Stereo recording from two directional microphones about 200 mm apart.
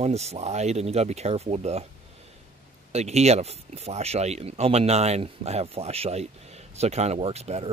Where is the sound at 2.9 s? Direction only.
35° right (ahead or behind).